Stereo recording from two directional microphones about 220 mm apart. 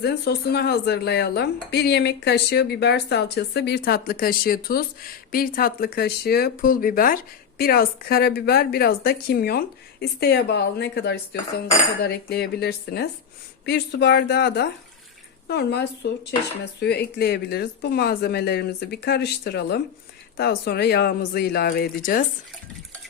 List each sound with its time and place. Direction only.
0.0 s speech: 50° left (ahead or behind)